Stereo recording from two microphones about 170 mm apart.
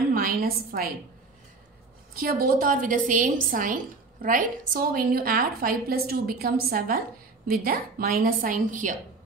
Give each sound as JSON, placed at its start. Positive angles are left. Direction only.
{"t": 0.1, "sound": "a woman's voice", "side_deg": -60}
{"t": 2.4, "sound": "a woman's voice", "side_deg": -55}